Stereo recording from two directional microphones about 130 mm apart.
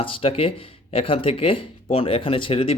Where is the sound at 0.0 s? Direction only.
45° left (ahead or behind).